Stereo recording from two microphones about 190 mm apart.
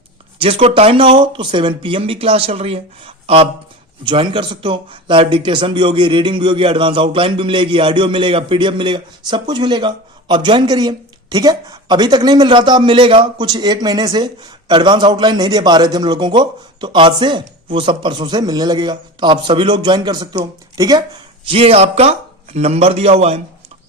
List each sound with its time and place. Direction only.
0.3 s a man's voice: 30° right (ahead or behind)